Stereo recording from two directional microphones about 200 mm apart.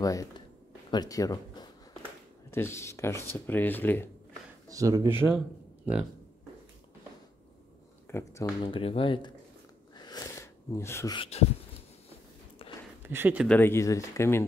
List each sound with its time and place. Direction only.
0.0 s speech: 15° left (ahead or behind)
4.6 s speech: 15° right (ahead or behind)
5.2 s a man's voice: 5° right (ahead or behind)
8.1 s speech: 15° left (ahead or behind)
8.6 s speech: 25° left (ahead or behind)
9.9 s a sound: 20° left (ahead or behind)
11.1 s speech: 30° left (ahead or behind)
13.0 s speech: 10° right (ahead or behind)
13.5 s speech: 10° left (ahead or behind)